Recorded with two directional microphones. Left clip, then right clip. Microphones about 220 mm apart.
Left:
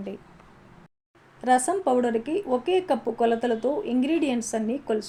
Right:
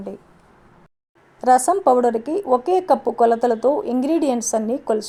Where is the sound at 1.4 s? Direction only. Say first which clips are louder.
Right 7 dB; 30° right (ahead or behind).